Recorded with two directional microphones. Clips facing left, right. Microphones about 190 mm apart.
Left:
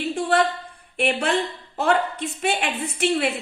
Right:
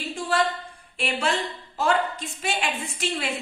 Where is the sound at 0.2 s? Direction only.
60° left (ahead or behind).